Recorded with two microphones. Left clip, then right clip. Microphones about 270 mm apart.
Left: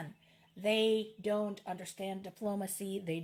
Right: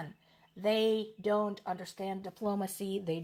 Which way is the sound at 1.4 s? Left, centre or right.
Centre.